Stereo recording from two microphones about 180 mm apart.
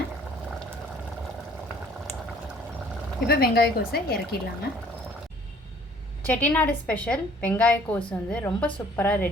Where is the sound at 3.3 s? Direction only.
60° left (ahead or behind).